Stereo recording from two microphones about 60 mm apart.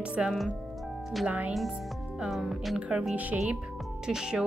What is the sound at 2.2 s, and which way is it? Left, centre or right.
Speech, centre.